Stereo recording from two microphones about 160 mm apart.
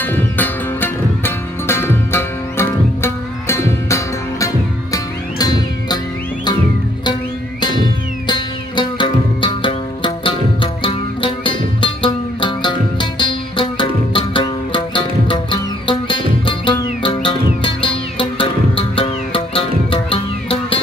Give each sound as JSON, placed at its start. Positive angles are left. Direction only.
{"t": 0.0, "sound": "music", "side_deg": 10}
{"t": 8.3, "sound": "music", "side_deg": 30}